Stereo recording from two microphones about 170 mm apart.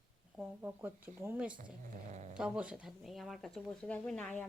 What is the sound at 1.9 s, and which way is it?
Speech, 45° right (ahead or behind).